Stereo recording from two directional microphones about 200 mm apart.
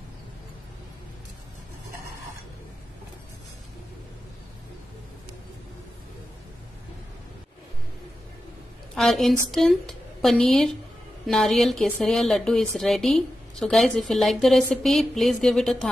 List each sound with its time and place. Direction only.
8.9 s a woman's voice: centre (ahead or behind)